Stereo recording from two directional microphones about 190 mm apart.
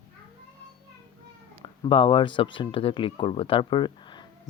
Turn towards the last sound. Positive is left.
turn(degrees=25)  # may be behind; listen again after turning